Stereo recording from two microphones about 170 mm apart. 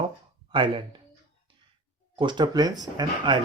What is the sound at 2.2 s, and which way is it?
Speech, 25° right (ahead or behind).